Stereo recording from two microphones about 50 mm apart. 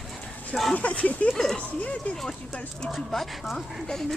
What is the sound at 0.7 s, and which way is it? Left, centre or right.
Speech, left.